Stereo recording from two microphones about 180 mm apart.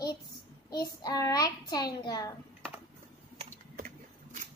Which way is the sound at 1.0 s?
20° left (ahead or behind).